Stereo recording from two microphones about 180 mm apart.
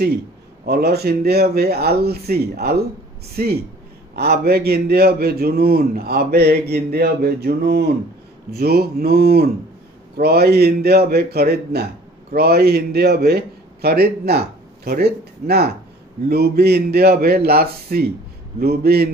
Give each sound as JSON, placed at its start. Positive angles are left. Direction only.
{"t": 0.7, "sound": "a man's voice", "side_deg": -60}